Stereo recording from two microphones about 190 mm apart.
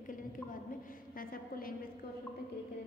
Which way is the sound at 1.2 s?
50° left (ahead or behind).